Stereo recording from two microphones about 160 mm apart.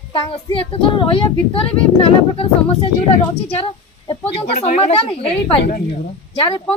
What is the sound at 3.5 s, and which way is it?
A woman's voice, 35° left (ahead or behind).